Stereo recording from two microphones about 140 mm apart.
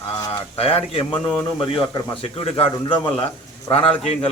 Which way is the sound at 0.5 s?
45° left (ahead or behind).